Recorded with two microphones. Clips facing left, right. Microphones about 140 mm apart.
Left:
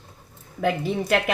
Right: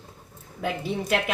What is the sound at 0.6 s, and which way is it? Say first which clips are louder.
Speech: left 5 dB; 55° left (ahead or behind).